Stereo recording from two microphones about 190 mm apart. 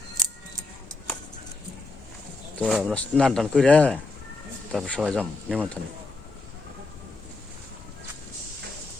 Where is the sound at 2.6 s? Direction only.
Centre (ahead or behind).